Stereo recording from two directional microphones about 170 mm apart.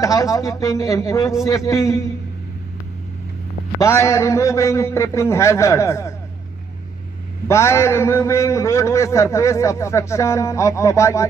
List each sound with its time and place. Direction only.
0.0 s a man's voice: 20° left (ahead or behind)
3.8 s a man's voice: 15° left (ahead or behind)
7.4 s a man's voice: 15° left (ahead or behind)